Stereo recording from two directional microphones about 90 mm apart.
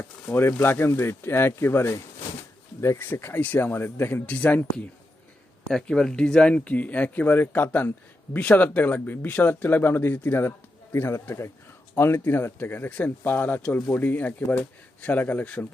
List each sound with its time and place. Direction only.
0.0 s speech: 30° left (ahead or behind)
5.6 s speech: 5° left (ahead or behind)